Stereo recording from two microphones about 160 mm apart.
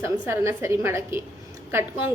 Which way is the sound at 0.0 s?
15° right (ahead or behind).